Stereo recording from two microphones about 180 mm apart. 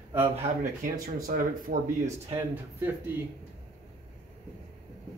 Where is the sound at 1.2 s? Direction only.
50° right (ahead or behind).